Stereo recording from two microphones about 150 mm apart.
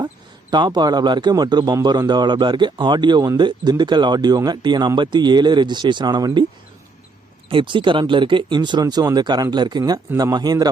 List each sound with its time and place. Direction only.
0.5 s a man's voice: 30° right (ahead or behind)
7.5 s a man's voice: 35° right (ahead or behind)